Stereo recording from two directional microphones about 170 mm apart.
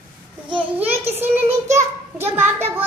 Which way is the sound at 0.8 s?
15° right (ahead or behind).